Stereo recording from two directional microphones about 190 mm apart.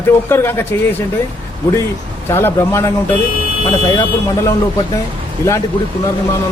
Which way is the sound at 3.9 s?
20° left (ahead or behind).